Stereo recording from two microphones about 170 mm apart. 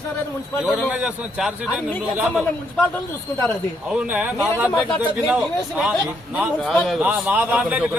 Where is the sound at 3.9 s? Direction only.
5° right (ahead or behind).